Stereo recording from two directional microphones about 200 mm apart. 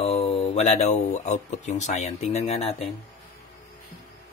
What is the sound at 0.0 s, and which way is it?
Speech, 30° left (ahead or behind).